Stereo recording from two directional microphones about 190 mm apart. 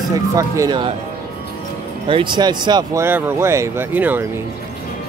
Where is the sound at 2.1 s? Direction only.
25° right (ahead or behind); by 4.2 s 10° right (ahead or behind).